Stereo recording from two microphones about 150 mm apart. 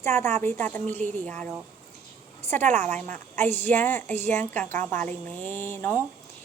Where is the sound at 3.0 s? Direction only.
10° left (ahead or behind).